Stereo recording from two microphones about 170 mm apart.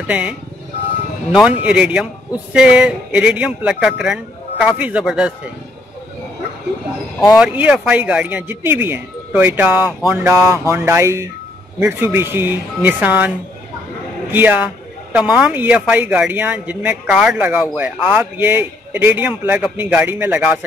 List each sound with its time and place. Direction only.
0.0 s speech: 10° right (ahead or behind)
1.3 s a man's voice: 5° right (ahead or behind)
7.3 s speech: 5° right (ahead or behind)
14.3 s speech: 10° right (ahead or behind)